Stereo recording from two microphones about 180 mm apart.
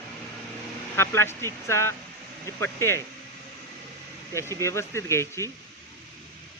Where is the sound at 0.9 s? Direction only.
15° left (ahead or behind).